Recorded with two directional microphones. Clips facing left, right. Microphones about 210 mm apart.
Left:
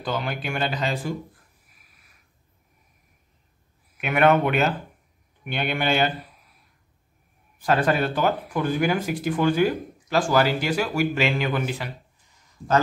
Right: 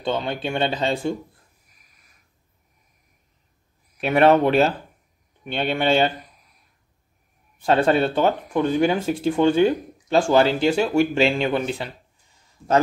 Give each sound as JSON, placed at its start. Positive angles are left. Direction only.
{"t": 0.0, "sound": "speech", "side_deg": -25}
{"t": 1.7, "sound": "a sound", "side_deg": 5}
{"t": 4.0, "sound": "speech", "side_deg": -30}
{"t": 7.6, "sound": "speech", "side_deg": -25}